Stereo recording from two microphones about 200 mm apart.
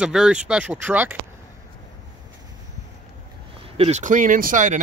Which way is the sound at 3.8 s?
35° right (ahead or behind).